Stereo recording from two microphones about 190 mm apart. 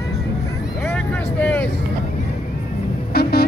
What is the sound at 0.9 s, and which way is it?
Vehicle, 10° left (ahead or behind).